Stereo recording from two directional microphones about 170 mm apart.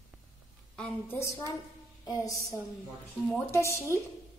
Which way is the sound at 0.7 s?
10° left (ahead or behind).